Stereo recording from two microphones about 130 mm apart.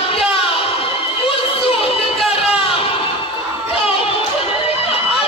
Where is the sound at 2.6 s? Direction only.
45° left (ahead or behind).